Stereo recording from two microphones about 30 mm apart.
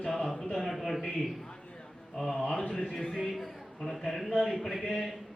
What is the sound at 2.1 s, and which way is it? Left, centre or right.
Mantra, centre.